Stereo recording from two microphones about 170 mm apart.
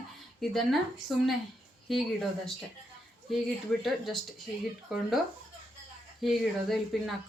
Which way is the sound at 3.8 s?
Centre (ahead or behind).